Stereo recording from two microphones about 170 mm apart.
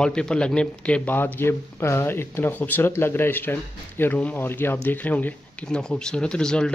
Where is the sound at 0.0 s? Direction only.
5° left (ahead or behind).